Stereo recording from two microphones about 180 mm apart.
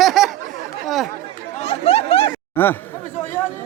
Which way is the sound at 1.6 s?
35° left (ahead or behind).